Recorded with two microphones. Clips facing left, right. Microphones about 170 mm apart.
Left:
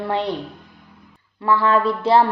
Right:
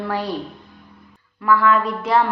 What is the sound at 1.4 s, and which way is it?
Speech, 30° left (ahead or behind).